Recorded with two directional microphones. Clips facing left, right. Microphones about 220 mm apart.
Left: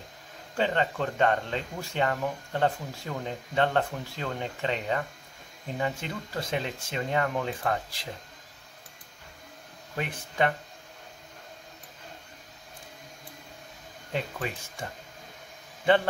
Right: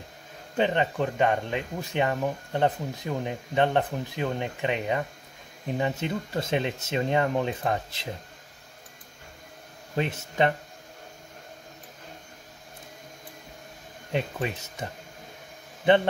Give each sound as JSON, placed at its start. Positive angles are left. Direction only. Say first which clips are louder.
{"t": 0.6, "sound": "speech", "louder": "right 3 dB", "side_deg": -15}
{"t": 9.9, "sound": "speech", "louder": "right 4 dB", "side_deg": -25}
{"t": 14.1, "sound": "speech", "louder": "right 4 dB", "side_deg": -20}